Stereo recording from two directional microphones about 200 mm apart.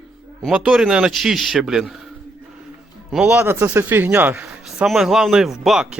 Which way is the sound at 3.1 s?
5° right (ahead or behind).